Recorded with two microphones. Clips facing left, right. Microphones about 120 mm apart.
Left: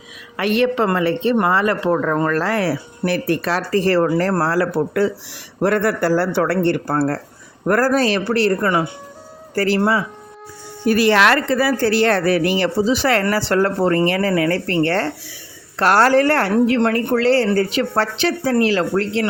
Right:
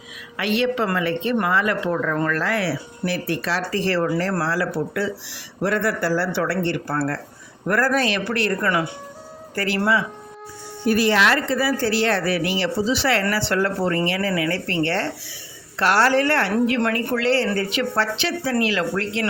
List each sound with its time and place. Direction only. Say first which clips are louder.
0.3 s a woman's voice: left 4 dB; 45° left (ahead or behind)
0.9 s a woman's voice: left 5 dB; 35° left (ahead or behind)
10.8 s a woman's voice: left 4 dB; 75° left (ahead or behind); by 19.2 s 35° left (ahead or behind)